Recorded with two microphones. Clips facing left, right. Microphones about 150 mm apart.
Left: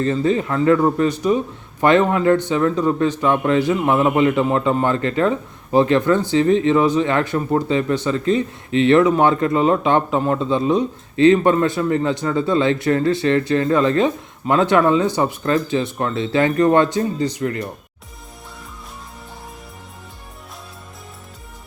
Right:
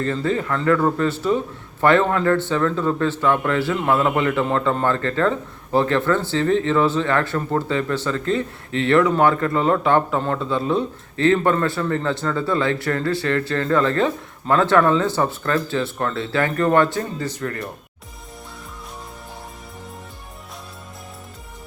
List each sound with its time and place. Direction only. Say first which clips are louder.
0.0 s speech: left 4 dB; 20° left (ahead or behind)